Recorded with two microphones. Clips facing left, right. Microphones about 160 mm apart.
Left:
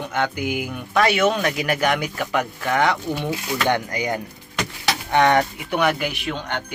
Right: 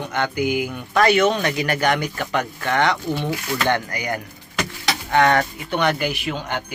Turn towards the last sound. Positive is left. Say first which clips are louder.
# right 1 dB
turn(degrees=-5)  # may be behind; listen again after turning